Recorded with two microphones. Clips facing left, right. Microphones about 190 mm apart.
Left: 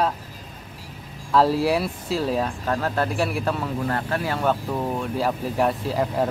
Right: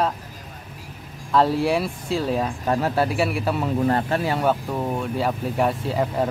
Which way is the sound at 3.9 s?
25° right (ahead or behind).